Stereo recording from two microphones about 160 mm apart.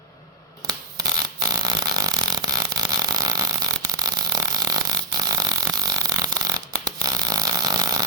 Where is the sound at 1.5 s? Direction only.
25° right (ahead or behind).